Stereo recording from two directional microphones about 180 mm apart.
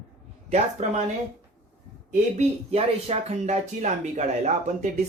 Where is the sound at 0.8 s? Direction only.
40° right (ahead or behind).